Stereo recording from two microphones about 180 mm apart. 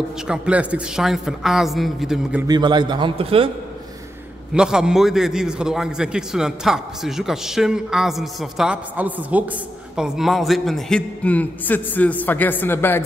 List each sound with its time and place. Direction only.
0.3 s a man's voice: 5° right (ahead or behind)
2.4 s a man's voice: 25° right (ahead or behind)
4.6 s a man's voice: 5° right (ahead or behind); by 13.0 s 10° left (ahead or behind)